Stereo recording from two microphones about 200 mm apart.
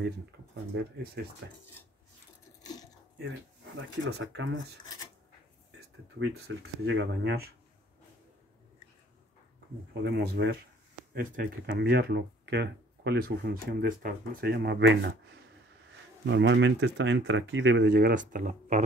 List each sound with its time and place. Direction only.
1.2 s speech: 55° right (ahead or behind)
2.6 s a sound: 20° left (ahead or behind)
4.1 s speech: 65° right (ahead or behind)
6.1 s speech: 65° right (ahead or behind)
10.0 s speech: 55° right (ahead or behind)
16.3 s speech: 65° right (ahead or behind); by 18.9 s 40° right (ahead or behind)